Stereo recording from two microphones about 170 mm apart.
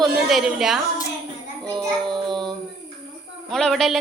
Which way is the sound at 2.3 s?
25° right (ahead or behind).